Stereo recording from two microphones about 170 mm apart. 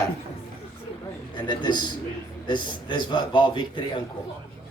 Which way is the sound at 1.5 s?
25° left (ahead or behind).